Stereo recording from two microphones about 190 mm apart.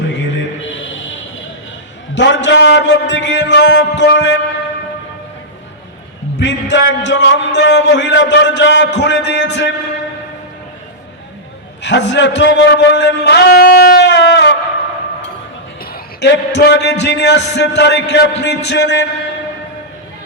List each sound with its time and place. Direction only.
2.1 s a man's voice: 70° left (ahead or behind)
6.4 s a man's voice: 70° left (ahead or behind)
11.8 s a man's voice: 70° left (ahead or behind)
15.8 s speech: 60° left (ahead or behind); by 19.0 s 75° left (ahead or behind)